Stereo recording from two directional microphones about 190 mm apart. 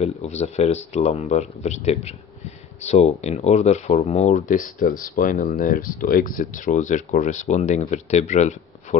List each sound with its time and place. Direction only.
0.0 s speech: 35° left (ahead or behind)